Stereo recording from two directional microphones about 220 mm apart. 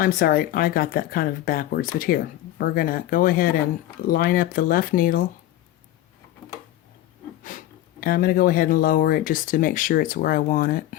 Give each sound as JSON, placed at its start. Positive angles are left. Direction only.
{"t": 0.0, "sound": "speech", "side_deg": 40}
{"t": 8.0, "sound": "speech", "side_deg": 40}